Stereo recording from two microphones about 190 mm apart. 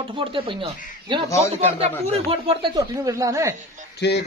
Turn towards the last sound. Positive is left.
turn(degrees=60)  # may be behind; listen again after turning